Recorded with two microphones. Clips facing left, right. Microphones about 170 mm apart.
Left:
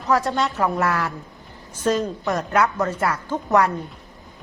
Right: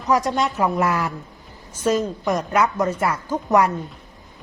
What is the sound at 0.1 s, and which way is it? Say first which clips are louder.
A woman's voice: right 1 dB; 15° right (ahead or behind).